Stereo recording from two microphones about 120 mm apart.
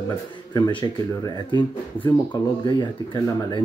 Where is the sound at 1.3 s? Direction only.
40° left (ahead or behind).